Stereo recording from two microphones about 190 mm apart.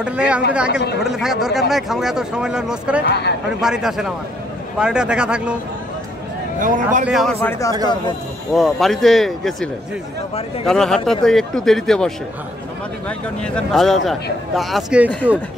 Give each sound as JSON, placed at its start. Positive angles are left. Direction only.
{"t": 0.0, "sound": "speech", "side_deg": -5}
{"t": 3.1, "sound": "speech", "side_deg": 60}
{"t": 3.6, "sound": "speech", "side_deg": -5}
{"t": 6.6, "sound": "speech", "side_deg": -45}
{"t": 7.1, "sound": "speech", "side_deg": 0}
{"t": 7.3, "sound": "speech", "side_deg": 15}
{"t": 8.5, "sound": "speech", "side_deg": 0}
{"t": 10.7, "sound": "speech", "side_deg": 5}
{"t": 13.4, "sound": "speech", "side_deg": 5}